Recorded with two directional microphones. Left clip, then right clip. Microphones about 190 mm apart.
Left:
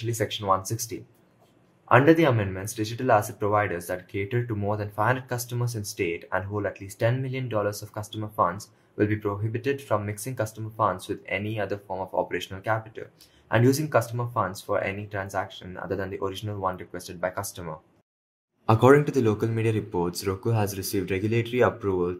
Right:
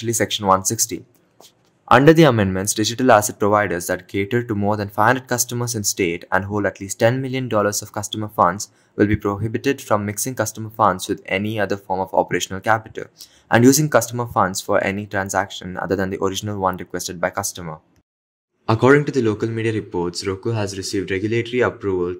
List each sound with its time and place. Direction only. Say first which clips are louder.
0.0 s speech: right 9 dB; 45° right (ahead or behind); by 17.7 s 25° right (ahead or behind)
18.7 s speech: right 4 dB; 5° right (ahead or behind)